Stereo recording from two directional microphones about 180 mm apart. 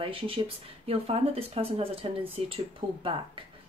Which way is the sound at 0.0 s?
30° right (ahead or behind).